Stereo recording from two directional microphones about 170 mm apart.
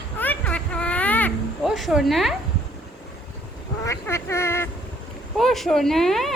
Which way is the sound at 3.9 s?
15° left (ahead or behind).